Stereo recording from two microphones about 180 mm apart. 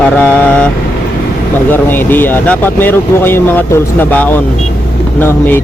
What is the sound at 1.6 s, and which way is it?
Speech, 10° left (ahead or behind).